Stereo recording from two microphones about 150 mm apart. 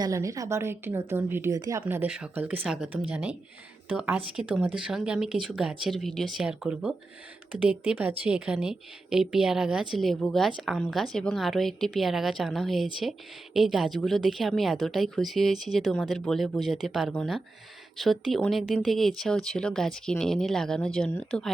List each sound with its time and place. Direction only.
0.0 s a woman's voice: 20° right (ahead or behind); by 21.5 s 5° left (ahead or behind)